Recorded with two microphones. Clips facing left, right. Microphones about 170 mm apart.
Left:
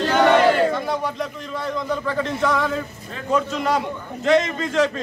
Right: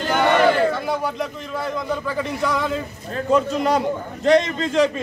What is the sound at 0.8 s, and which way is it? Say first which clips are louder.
A man's voice: right 1 dB; 5° right (ahead or behind).